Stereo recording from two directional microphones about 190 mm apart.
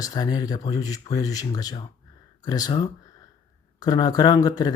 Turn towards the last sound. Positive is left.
turn(degrees=20)  # may be behind; listen again after turning